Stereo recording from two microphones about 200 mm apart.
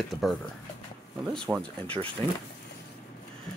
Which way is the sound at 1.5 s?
5° right (ahead or behind).